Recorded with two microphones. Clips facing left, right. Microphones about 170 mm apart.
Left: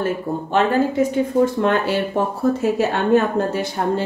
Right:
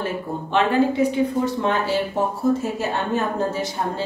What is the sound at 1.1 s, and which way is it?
Speech, 55° left (ahead or behind).